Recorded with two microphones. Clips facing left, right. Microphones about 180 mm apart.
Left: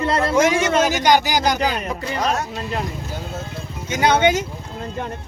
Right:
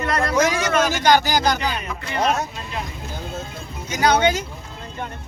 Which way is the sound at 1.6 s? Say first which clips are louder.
Left 4 dB; 40° left (ahead or behind).